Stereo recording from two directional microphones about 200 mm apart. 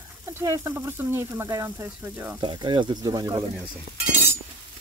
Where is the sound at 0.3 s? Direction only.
15° right (ahead or behind).